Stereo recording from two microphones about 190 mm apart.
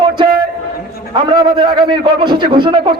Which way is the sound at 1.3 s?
25° right (ahead or behind).